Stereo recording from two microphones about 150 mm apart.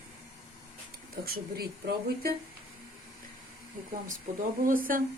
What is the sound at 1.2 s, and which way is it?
Speech, 90° right.